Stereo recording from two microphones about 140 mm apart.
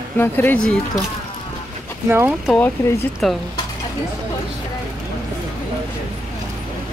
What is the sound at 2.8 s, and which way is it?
Speech, 20° left (ahead or behind).